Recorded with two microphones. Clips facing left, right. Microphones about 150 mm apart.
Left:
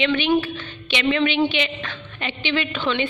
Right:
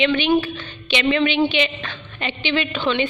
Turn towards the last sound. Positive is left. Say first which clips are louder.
# right 2 dB
turn(degrees=-20)  # may be behind; listen again after turning